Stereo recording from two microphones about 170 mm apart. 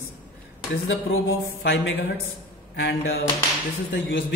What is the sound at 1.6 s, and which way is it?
A man's voice, 90° left.